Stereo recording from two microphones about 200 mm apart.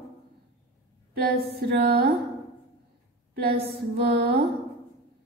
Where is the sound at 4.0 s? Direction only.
50° right (ahead or behind).